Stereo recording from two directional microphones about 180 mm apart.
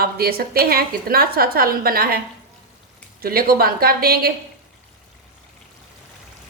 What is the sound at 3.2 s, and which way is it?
A woman's voice, 55° right (ahead or behind).